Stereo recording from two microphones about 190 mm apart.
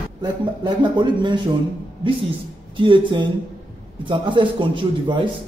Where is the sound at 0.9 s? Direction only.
25° right (ahead or behind).